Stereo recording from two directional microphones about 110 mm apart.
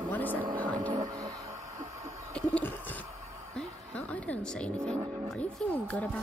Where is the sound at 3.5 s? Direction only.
10° left (ahead or behind).